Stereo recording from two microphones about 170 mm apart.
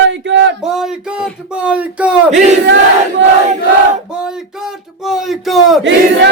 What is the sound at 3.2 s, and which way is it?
Speech, 90° right.